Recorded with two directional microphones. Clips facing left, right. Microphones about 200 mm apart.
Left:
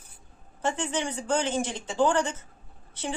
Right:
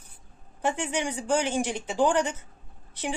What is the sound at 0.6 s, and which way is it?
A woman's voice, 15° right (ahead or behind).